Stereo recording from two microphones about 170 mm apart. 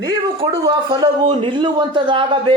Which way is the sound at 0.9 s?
30° right (ahead or behind).